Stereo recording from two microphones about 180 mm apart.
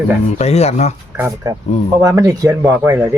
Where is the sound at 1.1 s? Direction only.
15° right (ahead or behind).